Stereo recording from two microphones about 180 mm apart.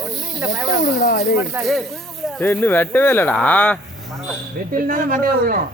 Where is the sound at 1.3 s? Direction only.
5° right (ahead or behind).